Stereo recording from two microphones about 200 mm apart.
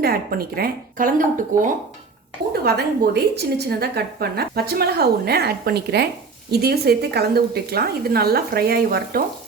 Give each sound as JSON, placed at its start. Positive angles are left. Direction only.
{"t": 0.0, "sound": "a woman's voice", "side_deg": -50}
{"t": 2.5, "sound": "a woman's voice", "side_deg": -50}